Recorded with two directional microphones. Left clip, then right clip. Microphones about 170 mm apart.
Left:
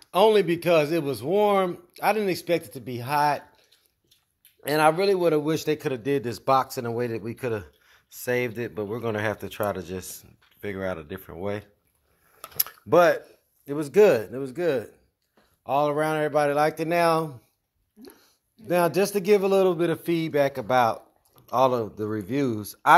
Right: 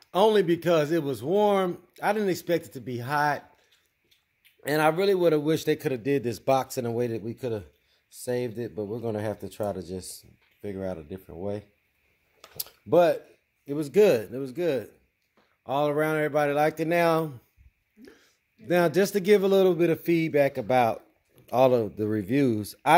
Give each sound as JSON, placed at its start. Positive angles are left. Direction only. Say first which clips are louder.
{"t": 0.0, "sound": "speech", "louder": "left 2 dB", "side_deg": -25}
{"t": 4.6, "sound": "speech", "louder": "left 3 dB", "side_deg": -25}
{"t": 8.7, "sound": "speech", "louder": "left 2 dB", "side_deg": 5}
{"t": 9.0, "sound": "speech", "louder": "left 6 dB", "side_deg": -15}
{"t": 13.7, "sound": "speech", "louder": "left 2 dB", "side_deg": -20}
{"t": 15.6, "sound": "speech", "louder": "left 2 dB", "side_deg": -30}